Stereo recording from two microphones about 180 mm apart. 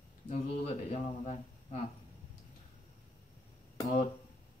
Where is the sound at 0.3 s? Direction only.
35° left (ahead or behind).